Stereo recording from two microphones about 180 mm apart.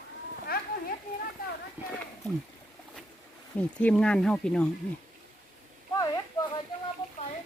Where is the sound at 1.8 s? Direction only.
10° right (ahead or behind).